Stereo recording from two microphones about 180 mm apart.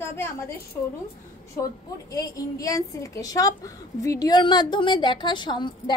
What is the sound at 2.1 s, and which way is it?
A woman's voice, 20° left (ahead or behind).